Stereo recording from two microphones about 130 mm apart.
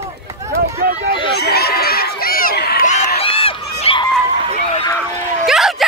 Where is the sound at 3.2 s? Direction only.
45° left (ahead or behind).